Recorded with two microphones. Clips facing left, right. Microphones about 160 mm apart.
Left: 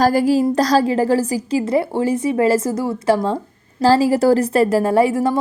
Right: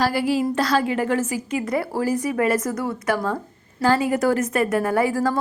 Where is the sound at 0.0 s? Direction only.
40° left (ahead or behind).